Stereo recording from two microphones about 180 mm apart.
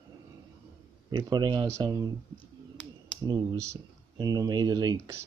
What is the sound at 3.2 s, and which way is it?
Speech, 20° right (ahead or behind).